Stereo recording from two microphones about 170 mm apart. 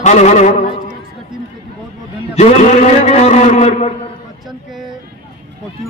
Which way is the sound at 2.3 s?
40° left (ahead or behind).